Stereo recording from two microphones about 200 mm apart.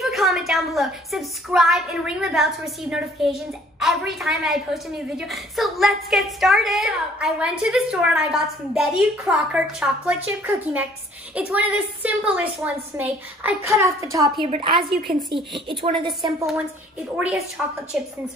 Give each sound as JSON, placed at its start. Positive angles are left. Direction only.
{"t": 0.0, "sound": "a woman's voice", "side_deg": 0}
{"t": 17.6, "sound": "a woman's voice", "side_deg": -5}